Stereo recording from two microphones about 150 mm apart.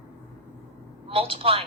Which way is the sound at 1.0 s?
35° right (ahead or behind).